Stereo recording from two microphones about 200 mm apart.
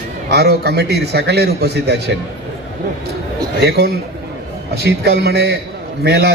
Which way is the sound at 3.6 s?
55° right (ahead or behind).